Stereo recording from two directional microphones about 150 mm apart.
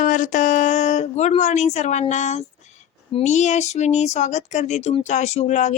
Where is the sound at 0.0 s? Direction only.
60° left (ahead or behind).